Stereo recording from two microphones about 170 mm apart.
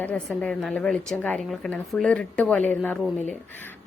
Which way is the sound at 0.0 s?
10° left (ahead or behind).